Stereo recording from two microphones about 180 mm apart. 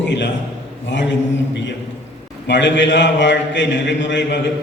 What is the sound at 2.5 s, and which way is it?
A man's voice, 85° left.